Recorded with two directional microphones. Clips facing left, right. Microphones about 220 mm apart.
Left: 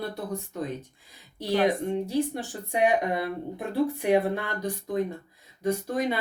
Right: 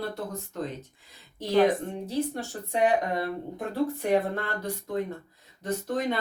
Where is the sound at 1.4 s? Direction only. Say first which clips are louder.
Right 2 dB; 10° left (ahead or behind).